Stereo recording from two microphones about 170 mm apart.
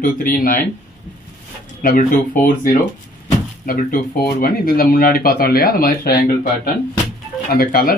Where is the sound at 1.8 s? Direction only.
55° left (ahead or behind).